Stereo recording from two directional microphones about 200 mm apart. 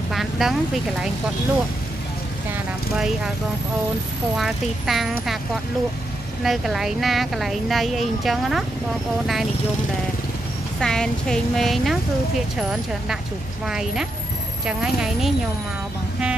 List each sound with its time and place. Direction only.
0.1 s vehicle: centre (ahead or behind)
4.4 s speech: centre (ahead or behind)
6.4 s speech: centre (ahead or behind)
10.8 s speech: 5° left (ahead or behind)
13.7 s speech: centre (ahead or behind)